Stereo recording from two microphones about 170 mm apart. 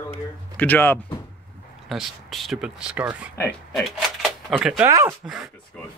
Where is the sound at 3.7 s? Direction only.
Centre (ahead or behind).